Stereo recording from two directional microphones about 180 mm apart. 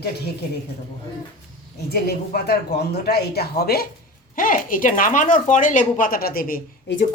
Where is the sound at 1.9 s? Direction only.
60° left (ahead or behind).